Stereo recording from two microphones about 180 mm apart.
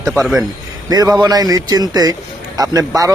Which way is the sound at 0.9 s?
20° right (ahead or behind).